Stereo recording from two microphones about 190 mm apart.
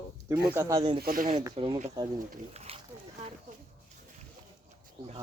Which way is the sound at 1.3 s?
25° right (ahead or behind).